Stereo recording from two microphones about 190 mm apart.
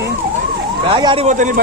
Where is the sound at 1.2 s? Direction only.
40° right (ahead or behind).